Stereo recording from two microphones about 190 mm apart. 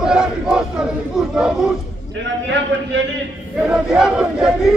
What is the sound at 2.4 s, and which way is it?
Speech, 70° right (ahead or behind).